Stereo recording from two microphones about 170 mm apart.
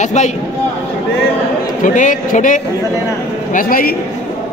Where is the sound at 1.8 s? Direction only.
50° left (ahead or behind).